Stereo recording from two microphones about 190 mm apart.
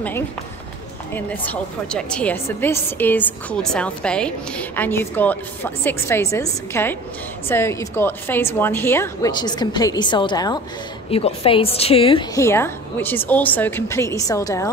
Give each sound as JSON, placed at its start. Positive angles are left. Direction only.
{"t": 1.1, "sound": "a woman's voice", "side_deg": 10}
{"t": 12.4, "sound": "a woman's voice", "side_deg": 15}